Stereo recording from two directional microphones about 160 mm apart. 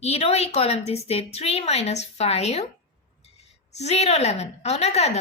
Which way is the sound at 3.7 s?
45° left (ahead or behind).